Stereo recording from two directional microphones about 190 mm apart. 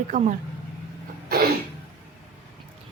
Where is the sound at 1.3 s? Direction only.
55° right (ahead or behind).